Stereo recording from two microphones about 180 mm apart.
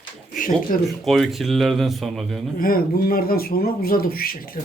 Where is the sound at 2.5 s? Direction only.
55° left (ahead or behind).